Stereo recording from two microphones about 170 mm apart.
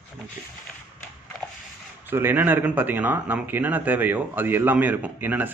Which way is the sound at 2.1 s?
10° right (ahead or behind).